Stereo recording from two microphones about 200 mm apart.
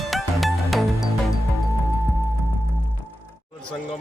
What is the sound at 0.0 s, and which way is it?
Music, centre (ahead or behind).